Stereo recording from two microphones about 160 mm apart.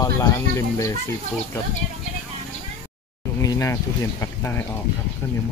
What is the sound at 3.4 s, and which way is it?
Speech, 20° left (ahead or behind).